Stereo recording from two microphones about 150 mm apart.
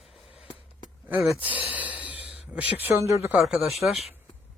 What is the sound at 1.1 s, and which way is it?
Speech, 15° right (ahead or behind).